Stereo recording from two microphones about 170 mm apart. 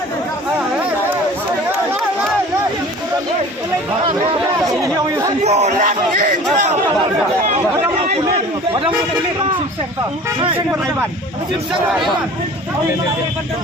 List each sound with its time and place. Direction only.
4.6 s speech: 20° right (ahead or behind)
5.4 s speech: 40° right (ahead or behind)